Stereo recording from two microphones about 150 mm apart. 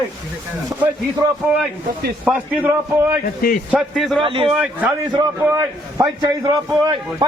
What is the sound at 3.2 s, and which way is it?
Speech, 75° left (ahead or behind).